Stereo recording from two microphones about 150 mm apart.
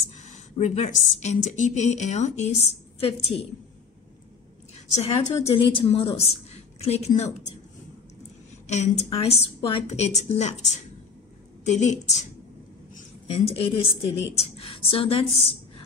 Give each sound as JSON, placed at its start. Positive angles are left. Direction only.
{"t": 0.1, "sound": "a woman's voice", "side_deg": 50}
{"t": 4.9, "sound": "a woman's voice", "side_deg": 45}
{"t": 8.6, "sound": "a woman's voice", "side_deg": 45}
{"t": 13.3, "sound": "a woman's voice", "side_deg": 40}